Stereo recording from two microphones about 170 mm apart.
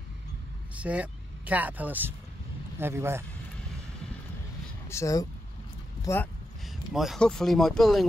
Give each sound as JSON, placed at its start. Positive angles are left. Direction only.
{"t": 0.7, "sound": "speech", "side_deg": -10}
{"t": 4.8, "sound": "speech", "side_deg": 15}
{"t": 6.9, "sound": "speech", "side_deg": 0}